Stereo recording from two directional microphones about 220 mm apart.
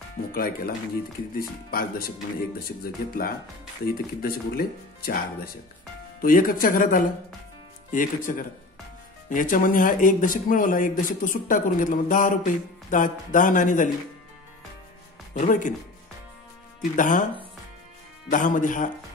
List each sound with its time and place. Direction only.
0.3 s a man's voice: 40° left (ahead or behind)
15.3 s a man's voice: 35° left (ahead or behind)
16.9 s a man's voice: 35° left (ahead or behind)
18.3 s a man's voice: 35° left (ahead or behind)